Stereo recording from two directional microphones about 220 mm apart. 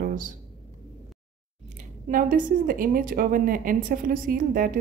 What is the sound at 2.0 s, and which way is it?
A woman's voice, 40° right (ahead or behind).